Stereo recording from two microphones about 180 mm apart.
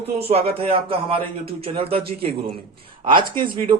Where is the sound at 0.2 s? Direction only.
35° right (ahead or behind).